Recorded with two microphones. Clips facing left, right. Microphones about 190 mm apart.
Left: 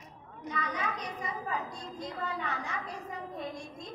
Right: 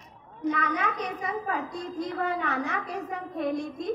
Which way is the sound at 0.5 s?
70° right (ahead or behind).